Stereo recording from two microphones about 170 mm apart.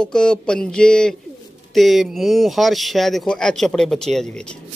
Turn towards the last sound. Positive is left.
turn(degrees=5)  # may be behind; listen again after turning